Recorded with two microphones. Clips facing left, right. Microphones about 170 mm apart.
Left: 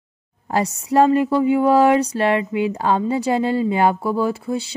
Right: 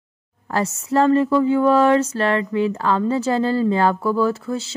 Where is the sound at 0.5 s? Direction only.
20° left (ahead or behind).